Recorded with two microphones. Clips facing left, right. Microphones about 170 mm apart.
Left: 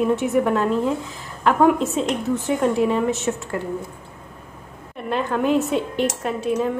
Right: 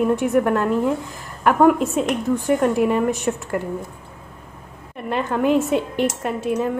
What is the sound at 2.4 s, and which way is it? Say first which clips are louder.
Speech: right 1 dB; 10° right (ahead or behind).